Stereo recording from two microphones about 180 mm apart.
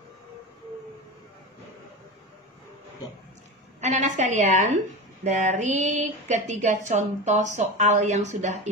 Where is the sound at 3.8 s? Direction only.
40° right (ahead or behind).